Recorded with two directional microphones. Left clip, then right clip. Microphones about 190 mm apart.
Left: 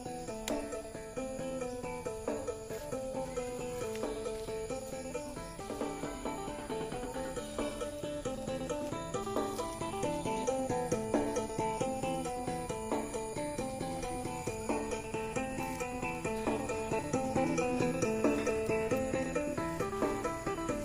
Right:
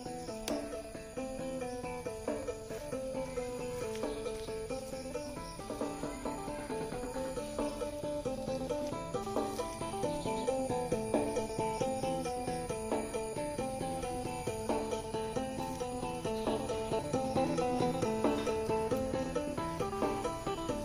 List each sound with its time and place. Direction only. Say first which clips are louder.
8.5 s music: right 1 dB; 25° left (ahead or behind)
9.3 s music: left 1 dB; 35° left (ahead or behind); by 13.7 s 20° left (ahead or behind)
14.7 s music: right 1 dB; 20° left (ahead or behind)
16.3 s music: right 1 dB; 30° left (ahead or behind)
17.7 s music: even; 15° left (ahead or behind)
18.1 s music: left 1 dB; 35° left (ahead or behind)
19.8 s music: right 1 dB; 35° left (ahead or behind)